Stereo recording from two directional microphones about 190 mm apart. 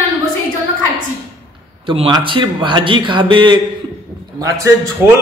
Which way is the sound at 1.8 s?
25° right (ahead or behind).